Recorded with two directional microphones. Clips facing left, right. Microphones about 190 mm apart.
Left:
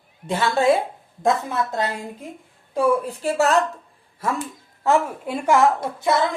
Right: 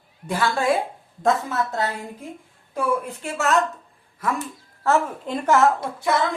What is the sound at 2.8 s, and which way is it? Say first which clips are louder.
Speech: left 4 dB; 35° left (ahead or behind).